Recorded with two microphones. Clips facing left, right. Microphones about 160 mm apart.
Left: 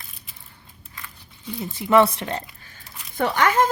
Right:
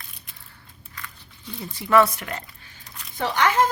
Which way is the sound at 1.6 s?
20° left (ahead or behind).